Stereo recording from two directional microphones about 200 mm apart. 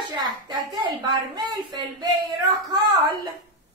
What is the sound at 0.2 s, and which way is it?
Speech, 20° right (ahead or behind).